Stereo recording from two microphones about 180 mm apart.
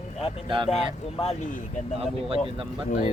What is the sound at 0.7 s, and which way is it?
Speech, 35° left (ahead or behind).